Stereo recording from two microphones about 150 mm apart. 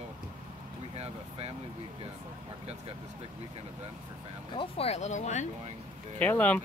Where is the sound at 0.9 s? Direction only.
45° right (ahead or behind).